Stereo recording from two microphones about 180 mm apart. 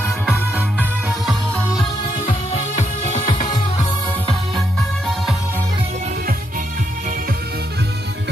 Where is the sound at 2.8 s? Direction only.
40° left (ahead or behind).